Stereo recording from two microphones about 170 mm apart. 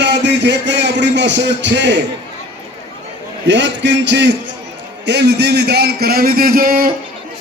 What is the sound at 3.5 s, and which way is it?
Speech, 90° right.